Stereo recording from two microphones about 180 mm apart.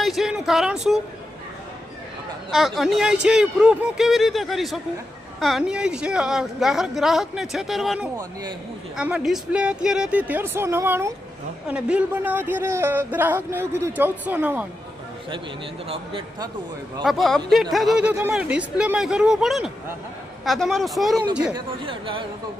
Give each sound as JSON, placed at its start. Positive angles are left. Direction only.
{"t": 0.0, "sound": "speech", "side_deg": 0}
{"t": 2.5, "sound": "a man's voice", "side_deg": 0}
{"t": 15.9, "sound": "speech", "side_deg": -30}
{"t": 17.0, "sound": "speech", "side_deg": 0}
{"t": 21.5, "sound": "speech", "side_deg": -30}